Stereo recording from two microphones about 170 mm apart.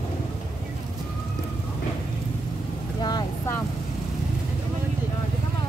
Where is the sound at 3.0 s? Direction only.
25° left (ahead or behind).